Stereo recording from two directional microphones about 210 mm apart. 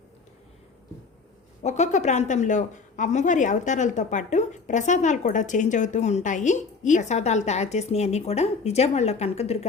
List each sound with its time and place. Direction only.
1.6 s a woman's voice: 35° left (ahead or behind)